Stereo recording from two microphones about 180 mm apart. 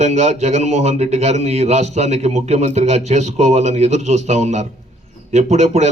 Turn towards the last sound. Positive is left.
turn(degrees=-40)  # may be behind; listen again after turning